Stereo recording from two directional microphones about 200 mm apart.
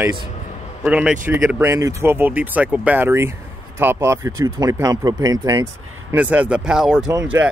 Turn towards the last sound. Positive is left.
turn(degrees=-10)  # may be behind; listen again after turning